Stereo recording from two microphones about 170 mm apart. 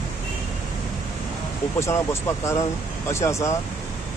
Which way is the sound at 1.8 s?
15° left (ahead or behind).